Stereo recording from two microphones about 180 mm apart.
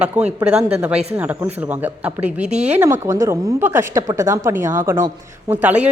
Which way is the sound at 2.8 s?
15° right (ahead or behind).